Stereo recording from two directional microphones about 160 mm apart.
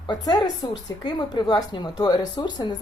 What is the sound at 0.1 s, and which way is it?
Speech, 25° left (ahead or behind).